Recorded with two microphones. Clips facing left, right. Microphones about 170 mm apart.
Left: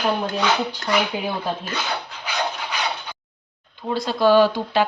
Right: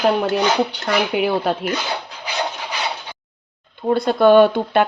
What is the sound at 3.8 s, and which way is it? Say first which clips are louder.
Speech: right 5 dB; 55° right (ahead or behind).